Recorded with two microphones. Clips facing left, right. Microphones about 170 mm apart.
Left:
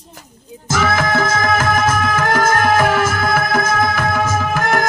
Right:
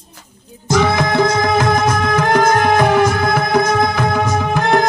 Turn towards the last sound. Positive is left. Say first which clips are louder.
# right 3 dB
turn(degrees=-20)  # may be behind; listen again after turning